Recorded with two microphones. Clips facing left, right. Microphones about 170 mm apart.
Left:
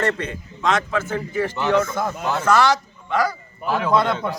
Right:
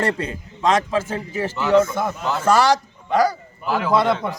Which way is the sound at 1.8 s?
10° right (ahead or behind).